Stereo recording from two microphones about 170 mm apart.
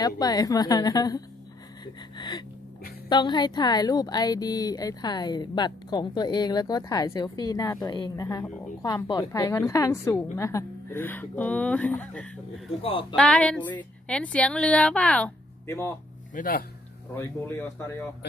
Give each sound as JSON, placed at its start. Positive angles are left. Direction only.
{"t": 0.0, "sound": "a woman's voice", "side_deg": 20}
{"t": 2.1, "sound": "music", "side_deg": 25}
{"t": 3.1, "sound": "a woman's voice", "side_deg": 25}
{"t": 16.3, "sound": "speech", "side_deg": 55}
{"t": 17.1, "sound": "a woman's voice", "side_deg": 15}